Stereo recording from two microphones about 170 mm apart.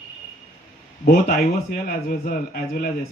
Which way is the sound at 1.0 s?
65° left (ahead or behind).